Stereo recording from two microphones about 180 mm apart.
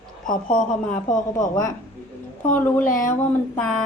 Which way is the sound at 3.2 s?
5° left (ahead or behind).